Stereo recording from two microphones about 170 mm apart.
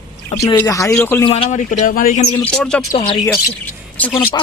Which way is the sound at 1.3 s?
40° left (ahead or behind).